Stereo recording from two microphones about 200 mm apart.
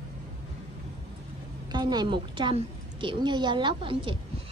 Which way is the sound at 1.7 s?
20° right (ahead or behind).